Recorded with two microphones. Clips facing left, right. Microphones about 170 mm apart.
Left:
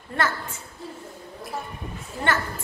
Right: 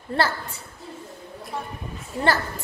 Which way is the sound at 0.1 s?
35° right (ahead or behind).